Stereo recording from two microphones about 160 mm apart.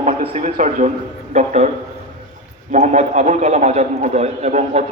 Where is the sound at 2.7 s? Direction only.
50° right (ahead or behind).